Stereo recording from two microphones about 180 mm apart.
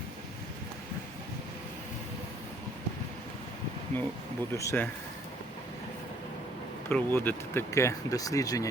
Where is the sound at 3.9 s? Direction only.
10° left (ahead or behind).